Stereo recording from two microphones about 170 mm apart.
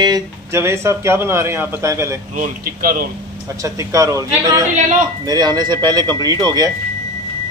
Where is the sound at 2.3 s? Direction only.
55° right (ahead or behind).